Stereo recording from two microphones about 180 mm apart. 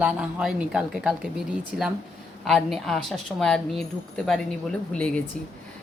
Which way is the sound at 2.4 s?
Centre (ahead or behind).